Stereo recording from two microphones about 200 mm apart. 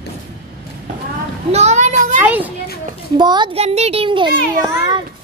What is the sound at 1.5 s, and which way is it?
Children playing, 35° right (ahead or behind).